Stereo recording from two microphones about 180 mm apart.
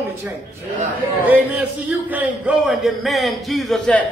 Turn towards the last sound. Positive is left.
turn(degrees=5)  # may be behind; listen again after turning